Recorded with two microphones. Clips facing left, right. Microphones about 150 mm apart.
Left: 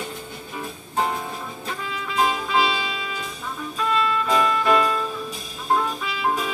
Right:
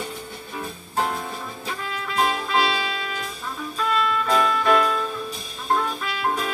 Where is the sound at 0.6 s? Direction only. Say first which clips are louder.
Left 1 dB; centre (ahead or behind).